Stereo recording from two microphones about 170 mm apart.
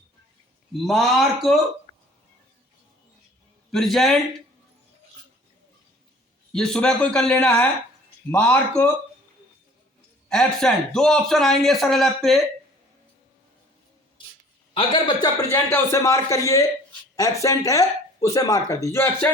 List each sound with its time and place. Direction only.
0.7 s a man's voice: centre (ahead or behind)
1.9 s hiccup: 45° right (ahead or behind)
3.7 s a man's voice: centre (ahead or behind)
6.5 s a man's voice: 5° left (ahead or behind)
10.2 s a man's voice: 5° left (ahead or behind)
14.2 s a sound: 30° left (ahead or behind)
14.7 s a man's voice: 30° left (ahead or behind)
15.7 s speech: 15° left (ahead or behind)